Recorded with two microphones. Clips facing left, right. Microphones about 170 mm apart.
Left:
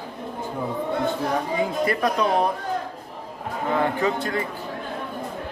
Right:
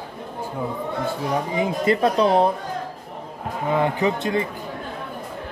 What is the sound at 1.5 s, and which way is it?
Speech, 20° right (ahead or behind).